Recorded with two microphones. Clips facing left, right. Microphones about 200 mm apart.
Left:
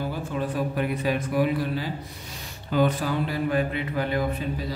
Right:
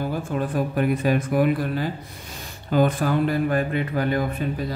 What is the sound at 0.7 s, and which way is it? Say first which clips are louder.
Speech: right 7 dB; 50° right (ahead or behind).